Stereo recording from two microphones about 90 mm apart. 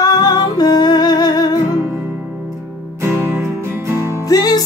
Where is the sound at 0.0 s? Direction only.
45° left (ahead or behind).